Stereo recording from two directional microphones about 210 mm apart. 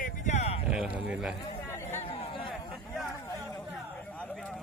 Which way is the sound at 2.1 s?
25° left (ahead or behind).